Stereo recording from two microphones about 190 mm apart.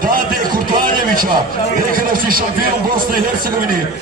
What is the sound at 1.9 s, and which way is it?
Speech, 50° right (ahead or behind).